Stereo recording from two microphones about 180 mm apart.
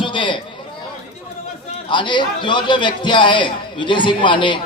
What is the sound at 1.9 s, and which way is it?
A man's voice, 25° left (ahead or behind).